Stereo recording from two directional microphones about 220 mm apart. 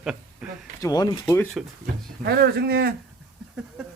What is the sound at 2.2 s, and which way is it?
Speech, 45° right (ahead or behind).